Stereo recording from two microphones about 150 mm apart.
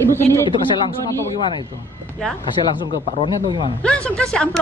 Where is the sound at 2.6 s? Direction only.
30° right (ahead or behind).